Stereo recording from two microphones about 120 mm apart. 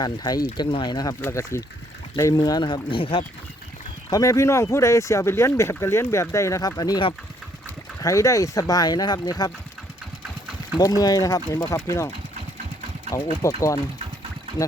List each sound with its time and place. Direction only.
0.0 s speech: 35° left (ahead or behind)
1.2 s speech: 25° left (ahead or behind); by 3.2 s 50° left (ahead or behind)
4.1 s speech: 25° left (ahead or behind)
8.0 s speech: 25° left (ahead or behind)
10.8 s speech: 30° left (ahead or behind)